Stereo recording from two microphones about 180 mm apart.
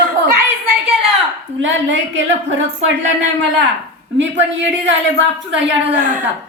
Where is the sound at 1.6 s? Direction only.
90° right.